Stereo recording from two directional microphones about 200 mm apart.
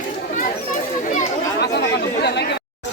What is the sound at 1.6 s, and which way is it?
Chatter, 55° left (ahead or behind).